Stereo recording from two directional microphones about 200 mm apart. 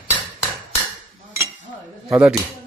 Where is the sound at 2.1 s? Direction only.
5° right (ahead or behind).